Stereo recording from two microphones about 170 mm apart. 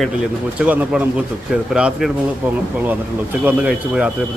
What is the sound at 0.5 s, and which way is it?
Speech, 10° right (ahead or behind).